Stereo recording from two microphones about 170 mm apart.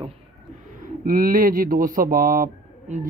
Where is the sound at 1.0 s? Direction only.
55° right (ahead or behind).